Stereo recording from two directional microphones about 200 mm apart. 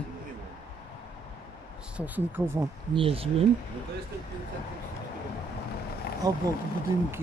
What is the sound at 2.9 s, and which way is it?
Speech, 25° right (ahead or behind).